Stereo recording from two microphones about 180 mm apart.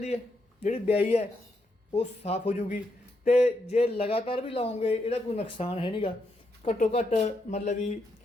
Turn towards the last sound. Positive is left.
turn(degrees=40)  # may be behind; listen again after turning